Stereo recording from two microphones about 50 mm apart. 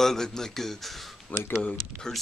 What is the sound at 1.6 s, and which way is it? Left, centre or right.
Speech, centre.